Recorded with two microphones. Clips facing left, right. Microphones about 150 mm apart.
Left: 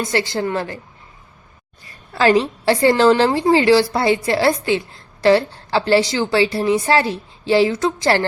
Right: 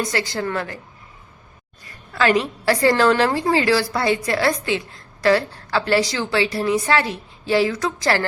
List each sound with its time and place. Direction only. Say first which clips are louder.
0.0 s a woman's voice: left 3 dB; 25° left (ahead or behind)
1.8 s a woman's voice: left 3 dB; 30° left (ahead or behind)